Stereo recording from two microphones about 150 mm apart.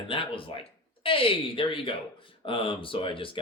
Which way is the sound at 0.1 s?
35° left (ahead or behind).